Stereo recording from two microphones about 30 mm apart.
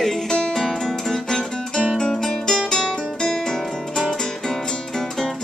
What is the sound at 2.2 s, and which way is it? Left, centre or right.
Music, centre.